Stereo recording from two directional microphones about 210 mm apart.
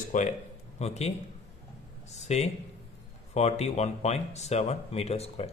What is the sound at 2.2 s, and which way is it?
Speech, 30° left (ahead or behind).